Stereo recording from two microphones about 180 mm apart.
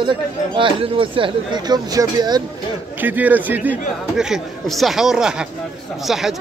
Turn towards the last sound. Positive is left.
turn(degrees=0)  # may be behind; listen again after turning